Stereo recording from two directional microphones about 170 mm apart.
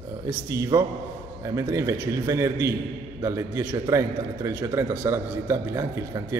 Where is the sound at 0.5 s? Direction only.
20° right (ahead or behind).